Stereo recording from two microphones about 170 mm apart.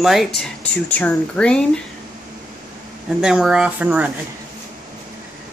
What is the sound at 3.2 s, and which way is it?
Speech, 5° right (ahead or behind).